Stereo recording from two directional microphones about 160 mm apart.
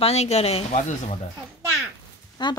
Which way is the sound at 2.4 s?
30° left (ahead or behind).